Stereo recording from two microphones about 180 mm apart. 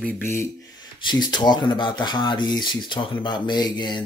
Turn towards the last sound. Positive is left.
turn(degrees=25)  # may be behind; listen again after turning